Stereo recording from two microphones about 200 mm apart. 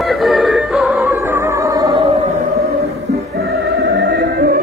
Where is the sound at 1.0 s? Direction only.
10° right (ahead or behind).